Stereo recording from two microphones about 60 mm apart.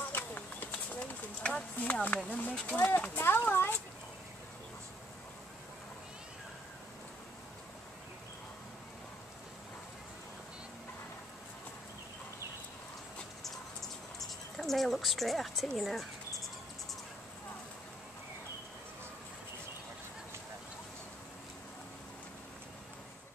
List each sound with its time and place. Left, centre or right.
0.1 s a sound: left
2.2 s speech: left
3.2 s speech: left
14.2 s speech: centre